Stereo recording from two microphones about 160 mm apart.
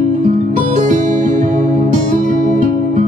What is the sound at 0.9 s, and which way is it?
Music, 50° right (ahead or behind).